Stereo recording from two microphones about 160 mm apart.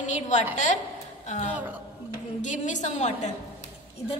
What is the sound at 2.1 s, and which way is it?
A woman's voice, 50° left (ahead or behind).